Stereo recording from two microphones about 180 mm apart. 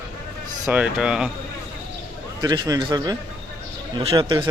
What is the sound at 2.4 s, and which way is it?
Speech, 20° right (ahead or behind).